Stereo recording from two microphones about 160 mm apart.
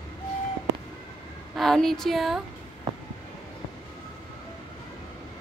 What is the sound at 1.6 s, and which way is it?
Speech, centre (ahead or behind).